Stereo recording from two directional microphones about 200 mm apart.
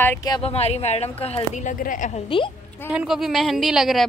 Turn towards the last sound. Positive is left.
turn(degrees=0)  # may be behind; listen again after turning